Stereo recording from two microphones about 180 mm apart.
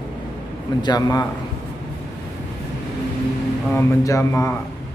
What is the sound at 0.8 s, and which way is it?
Speech, 20° left (ahead or behind).